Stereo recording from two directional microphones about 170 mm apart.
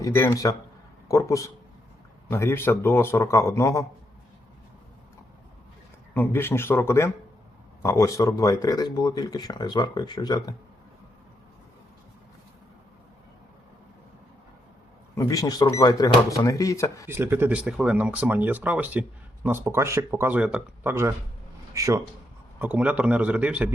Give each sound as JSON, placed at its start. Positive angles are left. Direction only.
{"t": 0.0, "sound": "a man's voice", "side_deg": 20}
{"t": 6.1, "sound": "a man's voice", "side_deg": 15}
{"t": 15.1, "sound": "speech", "side_deg": 20}
{"t": 17.1, "sound": "a man's voice", "side_deg": -15}